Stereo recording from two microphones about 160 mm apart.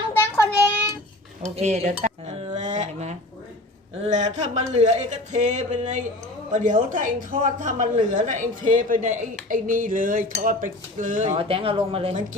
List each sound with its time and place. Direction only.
0.1 s child singing: 15° left (ahead or behind)
1.4 s cutlery: 45° right (ahead or behind)
4.0 s a woman's voice: 45° right (ahead or behind)
11.3 s speech: 35° right (ahead or behind)